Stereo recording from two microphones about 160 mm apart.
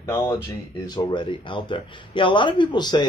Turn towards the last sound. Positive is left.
turn(degrees=25)  # may be behind; listen again after turning